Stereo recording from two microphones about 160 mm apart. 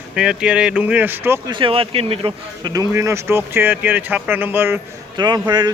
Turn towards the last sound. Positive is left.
turn(degrees=-25)  # may be behind; listen again after turning